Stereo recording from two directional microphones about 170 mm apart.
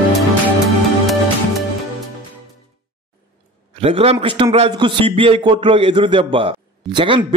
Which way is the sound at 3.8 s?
35° right (ahead or behind).